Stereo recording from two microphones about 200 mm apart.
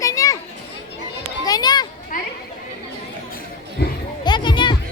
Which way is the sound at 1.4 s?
20° left (ahead or behind).